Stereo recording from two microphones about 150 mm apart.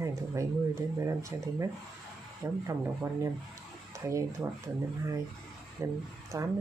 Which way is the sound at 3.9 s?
20° right (ahead or behind).